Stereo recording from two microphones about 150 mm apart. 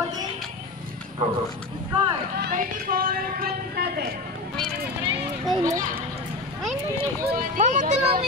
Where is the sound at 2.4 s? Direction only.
75° right (ahead or behind).